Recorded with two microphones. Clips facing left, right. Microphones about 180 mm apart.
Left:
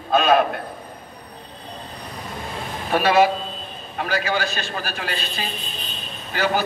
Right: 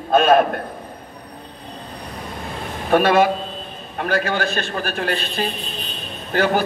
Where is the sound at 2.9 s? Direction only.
50° right (ahead or behind).